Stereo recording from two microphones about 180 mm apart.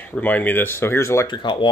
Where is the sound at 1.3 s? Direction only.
25° left (ahead or behind).